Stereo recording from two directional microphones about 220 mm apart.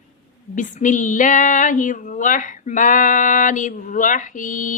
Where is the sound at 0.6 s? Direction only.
35° left (ahead or behind).